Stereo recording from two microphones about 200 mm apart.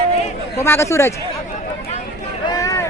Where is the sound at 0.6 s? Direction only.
10° left (ahead or behind).